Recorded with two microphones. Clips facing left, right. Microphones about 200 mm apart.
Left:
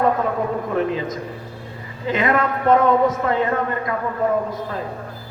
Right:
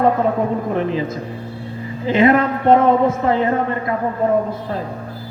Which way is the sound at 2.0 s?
30° right (ahead or behind).